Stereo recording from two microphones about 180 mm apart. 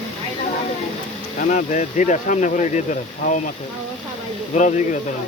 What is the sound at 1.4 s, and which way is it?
Speech, 45° left (ahead or behind).